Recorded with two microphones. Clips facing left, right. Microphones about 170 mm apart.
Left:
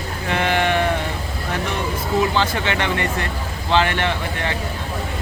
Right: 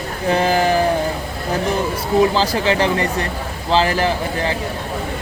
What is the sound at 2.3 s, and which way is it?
Speech, 30° right (ahead or behind).